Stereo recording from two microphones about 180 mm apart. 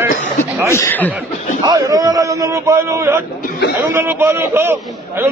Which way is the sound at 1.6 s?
20° right (ahead or behind).